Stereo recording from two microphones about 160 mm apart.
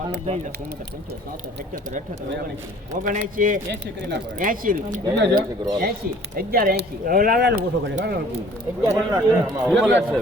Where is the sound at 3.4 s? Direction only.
75° right (ahead or behind); by 8.2 s 90° right.